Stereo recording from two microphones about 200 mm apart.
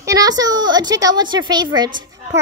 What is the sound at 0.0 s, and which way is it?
A woman's voice, 15° right (ahead or behind).